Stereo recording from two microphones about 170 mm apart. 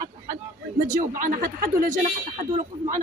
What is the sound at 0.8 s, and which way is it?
Speech, 50° right (ahead or behind).